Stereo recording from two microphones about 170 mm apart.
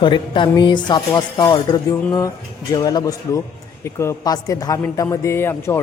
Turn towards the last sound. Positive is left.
turn(degrees=15)  # may be behind; listen again after turning